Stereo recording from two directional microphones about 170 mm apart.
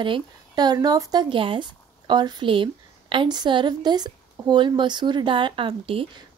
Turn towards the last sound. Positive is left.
turn(degrees=-30)  # may be behind; listen again after turning